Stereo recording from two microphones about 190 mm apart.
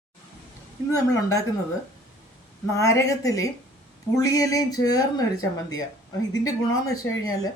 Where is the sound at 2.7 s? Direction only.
15° left (ahead or behind).